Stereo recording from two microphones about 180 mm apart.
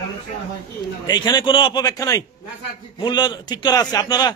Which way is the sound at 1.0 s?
25° left (ahead or behind).